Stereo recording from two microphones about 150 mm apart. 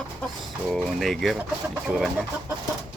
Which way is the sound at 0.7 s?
Centre (ahead or behind).